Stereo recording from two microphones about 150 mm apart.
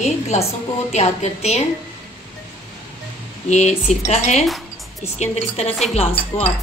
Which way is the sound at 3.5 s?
50° left (ahead or behind).